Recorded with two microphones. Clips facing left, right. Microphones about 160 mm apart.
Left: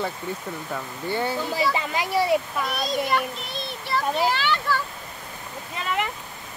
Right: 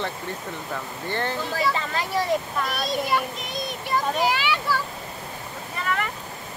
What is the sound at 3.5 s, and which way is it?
A child's voice, 15° right (ahead or behind).